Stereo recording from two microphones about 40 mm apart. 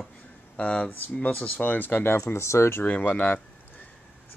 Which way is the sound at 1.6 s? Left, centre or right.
Left.